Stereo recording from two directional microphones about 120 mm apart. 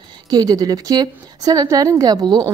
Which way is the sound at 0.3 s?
35° right (ahead or behind).